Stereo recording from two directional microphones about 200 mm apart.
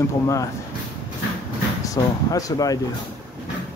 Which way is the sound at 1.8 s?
15° left (ahead or behind).